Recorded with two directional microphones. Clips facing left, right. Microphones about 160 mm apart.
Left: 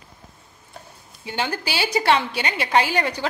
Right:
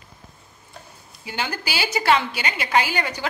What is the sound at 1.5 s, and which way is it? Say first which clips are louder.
A woman's voice: left 2 dB; 30° left (ahead or behind).